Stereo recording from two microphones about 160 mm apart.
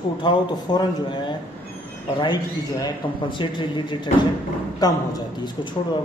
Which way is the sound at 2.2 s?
30° left (ahead or behind).